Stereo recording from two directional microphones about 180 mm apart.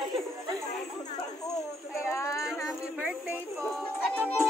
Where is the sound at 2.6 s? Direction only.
5° right (ahead or behind).